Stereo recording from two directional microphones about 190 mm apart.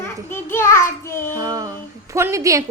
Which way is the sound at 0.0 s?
10° left (ahead or behind).